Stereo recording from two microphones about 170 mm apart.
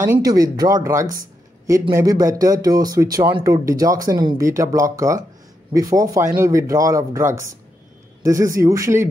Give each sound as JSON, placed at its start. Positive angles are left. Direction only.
{"t": 0.0, "sound": "speech", "side_deg": -20}